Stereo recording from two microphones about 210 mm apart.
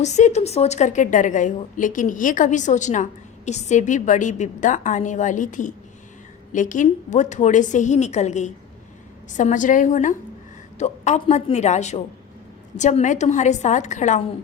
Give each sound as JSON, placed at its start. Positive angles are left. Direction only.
{"t": 0.0, "sound": "a woman's voice", "side_deg": 35}